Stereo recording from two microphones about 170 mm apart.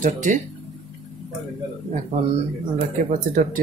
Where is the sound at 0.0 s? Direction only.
45° right (ahead or behind).